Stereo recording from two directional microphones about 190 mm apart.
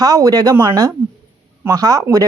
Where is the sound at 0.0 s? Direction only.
20° right (ahead or behind).